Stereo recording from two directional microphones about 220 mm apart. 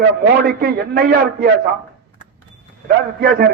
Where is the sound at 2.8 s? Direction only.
45° right (ahead or behind).